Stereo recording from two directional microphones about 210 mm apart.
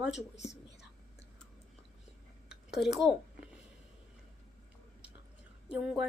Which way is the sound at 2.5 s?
Centre (ahead or behind).